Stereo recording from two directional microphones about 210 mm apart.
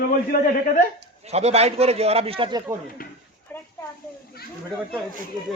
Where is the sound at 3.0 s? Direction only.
45° left (ahead or behind).